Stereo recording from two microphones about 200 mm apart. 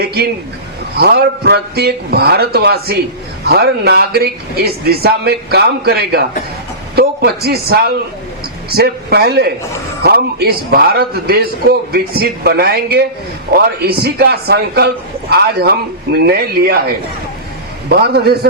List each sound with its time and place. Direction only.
0.0 s a man's voice: 50° right (ahead or behind)
17.8 s a man's voice: 55° right (ahead or behind)